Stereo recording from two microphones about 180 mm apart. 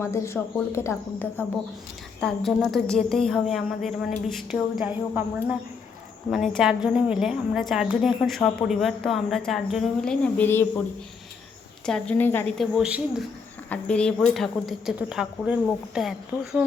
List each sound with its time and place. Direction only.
0.0 s speech: 15° left (ahead or behind)
2.2 s a woman's voice: centre (ahead or behind)
11.9 s speech: 5° left (ahead or behind)
12.5 s a woman's voice: 5° right (ahead or behind)
13.7 s a woman's voice: 5° left (ahead or behind)